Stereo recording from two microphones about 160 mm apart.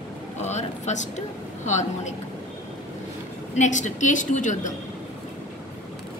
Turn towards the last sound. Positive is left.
turn(degrees=50)  # may be behind; listen again after turning